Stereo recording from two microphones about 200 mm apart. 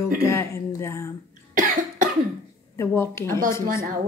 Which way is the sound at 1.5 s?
40° right (ahead or behind).